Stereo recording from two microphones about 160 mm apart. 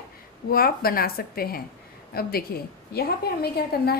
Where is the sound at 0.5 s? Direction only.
65° left (ahead or behind).